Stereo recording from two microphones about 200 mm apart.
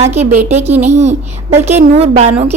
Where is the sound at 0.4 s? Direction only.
35° right (ahead or behind).